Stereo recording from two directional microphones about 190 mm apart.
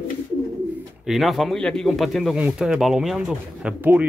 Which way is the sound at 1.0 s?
Centre (ahead or behind).